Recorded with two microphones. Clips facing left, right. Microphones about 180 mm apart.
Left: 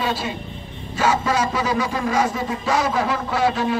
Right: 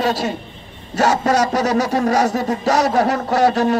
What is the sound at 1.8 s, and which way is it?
Speech, 40° right (ahead or behind).